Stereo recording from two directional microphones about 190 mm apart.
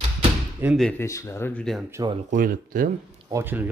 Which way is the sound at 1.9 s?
20° right (ahead or behind).